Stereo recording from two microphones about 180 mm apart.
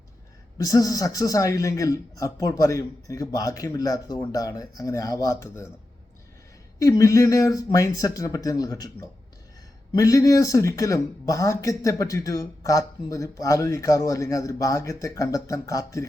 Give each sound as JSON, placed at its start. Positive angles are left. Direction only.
{"t": 0.6, "sound": "speech", "side_deg": 20}
{"t": 6.7, "sound": "speech", "side_deg": 20}